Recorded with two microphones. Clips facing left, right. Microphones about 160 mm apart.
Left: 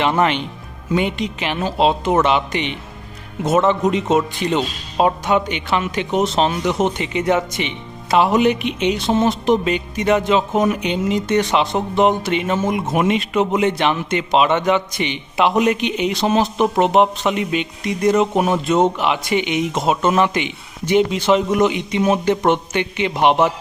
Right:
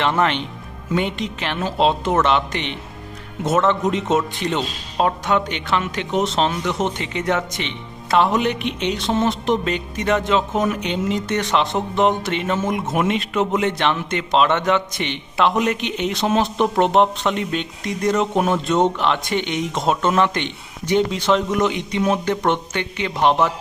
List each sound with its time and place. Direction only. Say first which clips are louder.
0.0 s a man's voice: left 2 dB; 5° left (ahead or behind)
22.7 s speech: left 4 dB; 15° left (ahead or behind)